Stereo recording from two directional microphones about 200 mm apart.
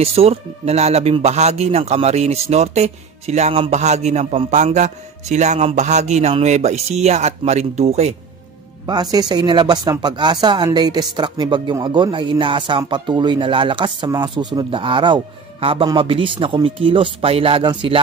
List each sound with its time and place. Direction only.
0.0 s speech: 30° right (ahead or behind)
8.8 s speech: 20° right (ahead or behind)